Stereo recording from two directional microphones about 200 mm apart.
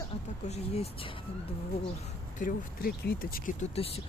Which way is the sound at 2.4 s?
50° left (ahead or behind).